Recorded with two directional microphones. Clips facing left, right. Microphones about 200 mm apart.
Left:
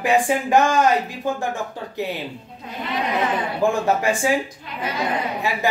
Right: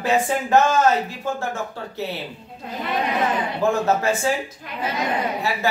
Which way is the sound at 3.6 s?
15° left (ahead or behind).